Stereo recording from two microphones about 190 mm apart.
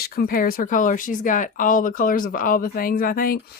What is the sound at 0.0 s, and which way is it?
Speech, 50° left (ahead or behind).